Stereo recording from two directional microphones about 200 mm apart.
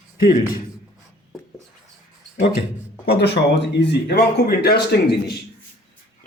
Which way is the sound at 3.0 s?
55° left (ahead or behind).